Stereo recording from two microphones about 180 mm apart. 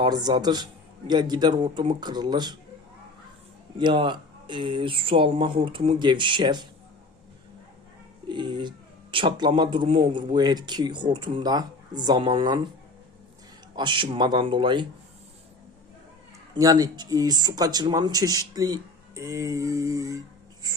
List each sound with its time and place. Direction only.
0.0 s speech: 20° right (ahead or behind)
3.8 s speech: 25° right (ahead or behind)
8.3 s a sound: 25° right (ahead or behind)
9.1 s speech: 30° right (ahead or behind)
13.7 s speech: 25° right (ahead or behind)
16.6 s speech: 20° right (ahead or behind)